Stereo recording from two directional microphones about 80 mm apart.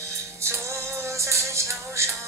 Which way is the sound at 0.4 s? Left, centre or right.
Right.